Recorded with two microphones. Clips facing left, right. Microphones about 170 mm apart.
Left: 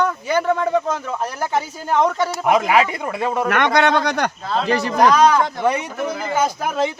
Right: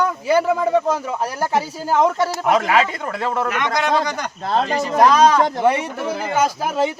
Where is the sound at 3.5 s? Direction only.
65° left (ahead or behind).